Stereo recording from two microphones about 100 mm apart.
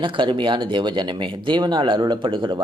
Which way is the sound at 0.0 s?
55° right (ahead or behind).